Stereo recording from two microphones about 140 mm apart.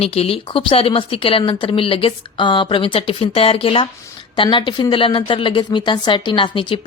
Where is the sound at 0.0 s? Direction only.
45° left (ahead or behind).